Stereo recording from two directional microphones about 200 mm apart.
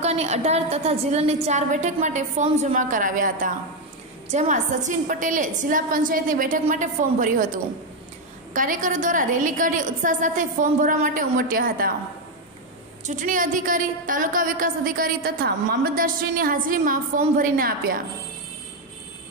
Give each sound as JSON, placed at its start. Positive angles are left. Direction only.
{"t": 0.0, "sound": "a woman's voice", "side_deg": -30}
{"t": 13.0, "sound": "a woman's voice", "side_deg": -40}